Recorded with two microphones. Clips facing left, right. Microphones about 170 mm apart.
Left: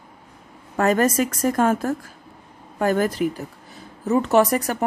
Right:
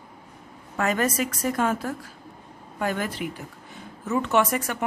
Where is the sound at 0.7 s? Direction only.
40° left (ahead or behind).